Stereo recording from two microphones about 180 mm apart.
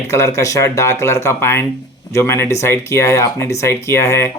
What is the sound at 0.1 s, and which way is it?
Speech, 15° left (ahead or behind).